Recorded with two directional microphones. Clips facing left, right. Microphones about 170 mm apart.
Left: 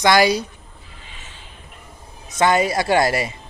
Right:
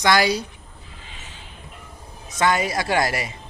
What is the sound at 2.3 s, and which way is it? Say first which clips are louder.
Speech: left 4 dB; 25° left (ahead or behind).